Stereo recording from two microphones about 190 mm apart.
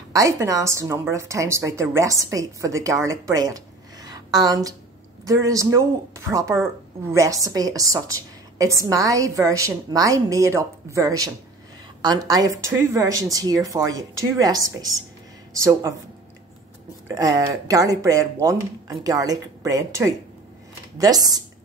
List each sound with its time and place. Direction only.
0.1 s a woman's voice: 15° right (ahead or behind)
17.1 s a woman's voice: 15° right (ahead or behind)